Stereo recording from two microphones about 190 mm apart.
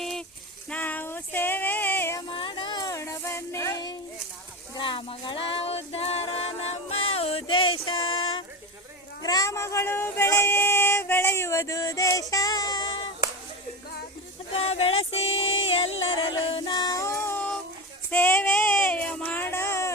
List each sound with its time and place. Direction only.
0.0 s a sound: centre (ahead or behind)
0.7 s music: 10° left (ahead or behind)
2.3 s music: 25° left (ahead or behind)
9.2 s a sound: 20° left (ahead or behind)
14.5 s music: 30° left (ahead or behind)
15.8 s music: 90° left
16.1 s music: 25° left (ahead or behind); by 17.6 s 10° left (ahead or behind)
18.1 s child singing: 10° left (ahead or behind)